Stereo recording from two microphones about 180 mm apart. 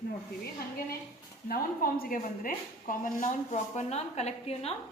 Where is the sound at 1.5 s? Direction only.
55° left (ahead or behind).